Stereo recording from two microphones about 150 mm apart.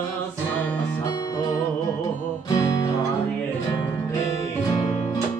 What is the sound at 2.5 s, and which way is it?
Music, 20° left (ahead or behind).